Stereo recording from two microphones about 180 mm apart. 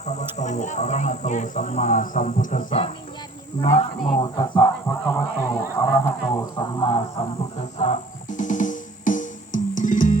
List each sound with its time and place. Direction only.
0.0 s speech: 40° left (ahead or behind)
4.9 s fowl: 15° left (ahead or behind)
5.7 s speech: 20° left (ahead or behind); by 10.2 s 45° left (ahead or behind)